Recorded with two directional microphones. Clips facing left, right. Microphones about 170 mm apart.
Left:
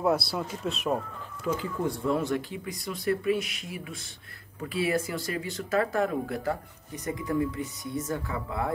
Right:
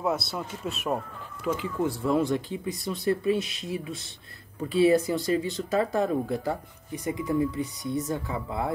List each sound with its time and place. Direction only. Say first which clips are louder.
0.0 s speech: left 2 dB; centre (ahead or behind)
2.3 s speech: right 2 dB; 25° right (ahead or behind)